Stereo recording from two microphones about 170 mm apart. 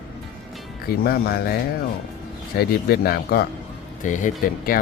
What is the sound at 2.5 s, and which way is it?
Speech, 65° left (ahead or behind).